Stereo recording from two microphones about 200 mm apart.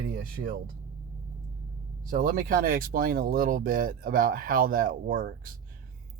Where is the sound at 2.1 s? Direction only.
45° right (ahead or behind).